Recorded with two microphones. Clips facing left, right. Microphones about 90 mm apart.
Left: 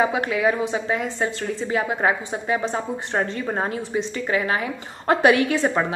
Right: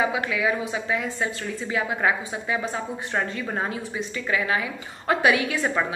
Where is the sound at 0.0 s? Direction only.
40° left (ahead or behind).